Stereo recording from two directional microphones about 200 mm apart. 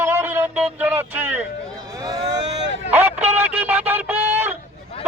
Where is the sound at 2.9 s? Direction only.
10° right (ahead or behind).